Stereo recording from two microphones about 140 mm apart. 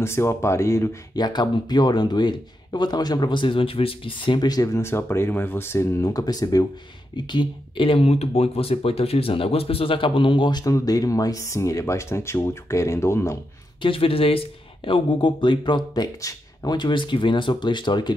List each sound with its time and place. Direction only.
0.0 s speech: 20° left (ahead or behind)
13.7 s speech: 40° left (ahead or behind)